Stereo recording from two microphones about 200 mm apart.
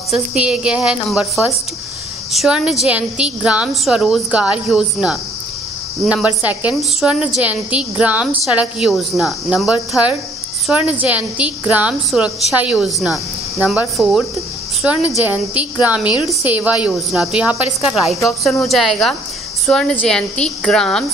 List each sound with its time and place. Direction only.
0.1 s a woman's voice: 5° right (ahead or behind)